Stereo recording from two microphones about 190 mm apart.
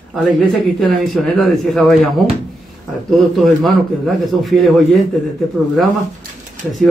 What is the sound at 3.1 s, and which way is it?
Speech, centre (ahead or behind).